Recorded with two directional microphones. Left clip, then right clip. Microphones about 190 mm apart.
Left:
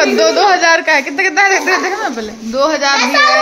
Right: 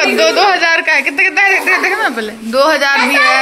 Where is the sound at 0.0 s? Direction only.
25° left (ahead or behind).